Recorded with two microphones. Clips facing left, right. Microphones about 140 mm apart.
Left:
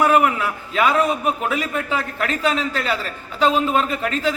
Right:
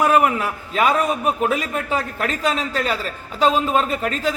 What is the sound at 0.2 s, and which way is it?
A man's voice, 35° right (ahead or behind).